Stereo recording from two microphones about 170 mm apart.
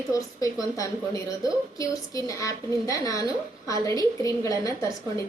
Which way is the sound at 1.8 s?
20° left (ahead or behind).